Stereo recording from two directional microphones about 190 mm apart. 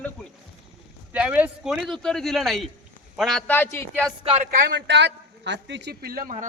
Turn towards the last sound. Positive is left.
turn(degrees=-45)  # may be behind; listen again after turning